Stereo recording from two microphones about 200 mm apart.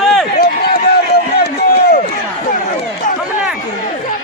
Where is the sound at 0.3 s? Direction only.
50° left (ahead or behind).